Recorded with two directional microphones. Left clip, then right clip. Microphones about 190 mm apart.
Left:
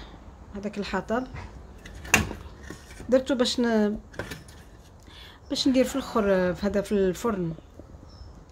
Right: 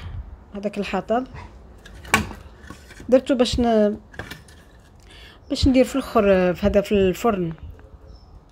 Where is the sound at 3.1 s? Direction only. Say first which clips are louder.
Right 5 dB; 15° right (ahead or behind).